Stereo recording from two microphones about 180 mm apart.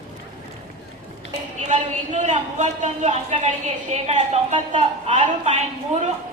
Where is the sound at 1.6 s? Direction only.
40° right (ahead or behind).